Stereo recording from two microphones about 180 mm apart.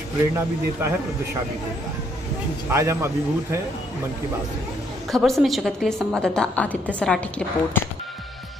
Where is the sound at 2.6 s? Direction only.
15° right (ahead or behind).